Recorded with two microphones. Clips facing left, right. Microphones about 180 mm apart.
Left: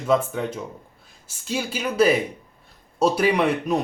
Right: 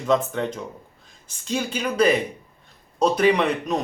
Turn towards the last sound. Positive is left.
turn(degrees=10)  # may be behind; listen again after turning